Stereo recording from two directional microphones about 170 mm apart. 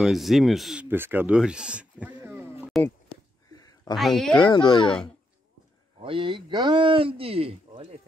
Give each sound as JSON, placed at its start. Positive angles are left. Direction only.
{"t": 0.0, "sound": "speech", "side_deg": 0}
{"t": 2.7, "sound": "speech", "side_deg": 0}
{"t": 3.5, "sound": "a sound", "side_deg": 20}
{"t": 3.9, "sound": "speech", "side_deg": 0}
{"t": 4.4, "sound": "a child's voice", "side_deg": 30}
{"t": 5.9, "sound": "speech", "side_deg": -30}